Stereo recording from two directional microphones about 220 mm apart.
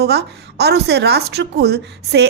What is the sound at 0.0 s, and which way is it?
Speech, 45° right (ahead or behind).